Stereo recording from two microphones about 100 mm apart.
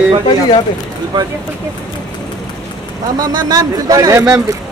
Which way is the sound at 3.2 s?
40° right (ahead or behind).